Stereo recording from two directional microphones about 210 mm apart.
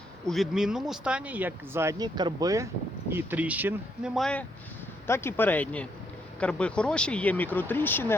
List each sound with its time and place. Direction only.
0.3 s speech: centre (ahead or behind)